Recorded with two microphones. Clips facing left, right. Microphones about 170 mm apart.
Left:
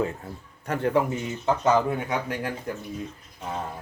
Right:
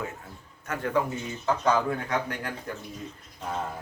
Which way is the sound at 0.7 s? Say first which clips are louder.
Left 4 dB; 30° left (ahead or behind).